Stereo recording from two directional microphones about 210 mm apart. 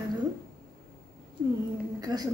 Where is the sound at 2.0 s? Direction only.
15° right (ahead or behind).